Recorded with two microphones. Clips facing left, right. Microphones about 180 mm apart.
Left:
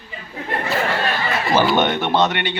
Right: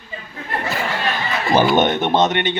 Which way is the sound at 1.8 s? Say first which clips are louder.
Right 2 dB; 20° right (ahead or behind).